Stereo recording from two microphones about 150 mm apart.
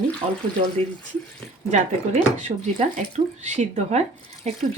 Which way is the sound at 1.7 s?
50° right (ahead or behind).